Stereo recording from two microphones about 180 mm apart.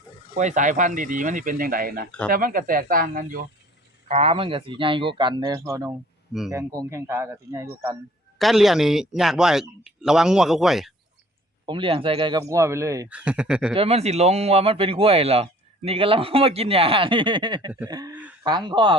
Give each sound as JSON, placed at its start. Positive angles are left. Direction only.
{"t": 0.3, "sound": "speech", "side_deg": -45}
{"t": 4.1, "sound": "speech", "side_deg": -35}
{"t": 8.4, "sound": "speech", "side_deg": 0}
{"t": 11.6, "sound": "speech", "side_deg": -30}
{"t": 13.1, "sound": "speech", "side_deg": -5}
{"t": 13.7, "sound": "speech", "side_deg": -35}
{"t": 18.1, "sound": "a sound", "side_deg": -10}
{"t": 18.4, "sound": "speech", "side_deg": -25}